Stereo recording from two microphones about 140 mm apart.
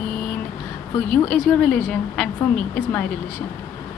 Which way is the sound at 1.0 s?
5° left (ahead or behind).